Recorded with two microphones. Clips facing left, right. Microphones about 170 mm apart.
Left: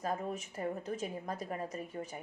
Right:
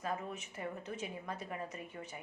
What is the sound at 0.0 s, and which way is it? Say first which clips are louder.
Speech: left 4 dB; 40° left (ahead or behind).